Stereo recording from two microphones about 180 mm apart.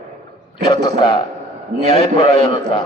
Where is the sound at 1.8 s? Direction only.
30° left (ahead or behind).